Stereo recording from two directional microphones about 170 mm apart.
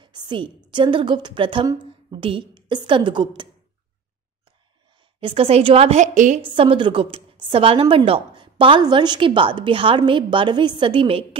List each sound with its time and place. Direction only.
0.0 s a sound: 25° right (ahead or behind)
0.7 s a woman's voice: 30° right (ahead or behind)
5.2 s a woman's voice: 35° right (ahead or behind)
6.4 s a woman's voice: 30° right (ahead or behind)